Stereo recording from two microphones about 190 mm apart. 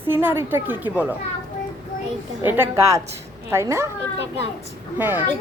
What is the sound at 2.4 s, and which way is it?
A child's voice, 10° right (ahead or behind).